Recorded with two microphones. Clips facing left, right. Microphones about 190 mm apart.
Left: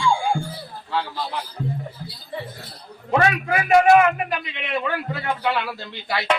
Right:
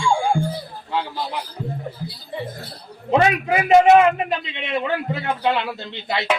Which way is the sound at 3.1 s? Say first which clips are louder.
Right 3 dB; 20° right (ahead or behind).